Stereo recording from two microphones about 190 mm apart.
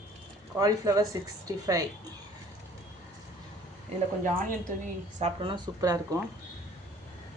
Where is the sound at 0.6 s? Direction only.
20° right (ahead or behind).